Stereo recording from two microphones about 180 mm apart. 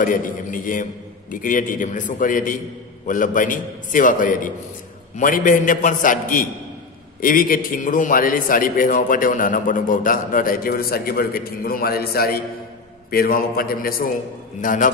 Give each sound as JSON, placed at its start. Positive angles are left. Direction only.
{"t": 0.0, "sound": "a man's voice", "side_deg": 50}